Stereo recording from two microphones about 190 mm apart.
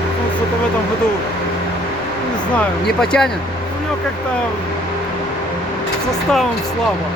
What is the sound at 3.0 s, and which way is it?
Speech, 5° left (ahead or behind).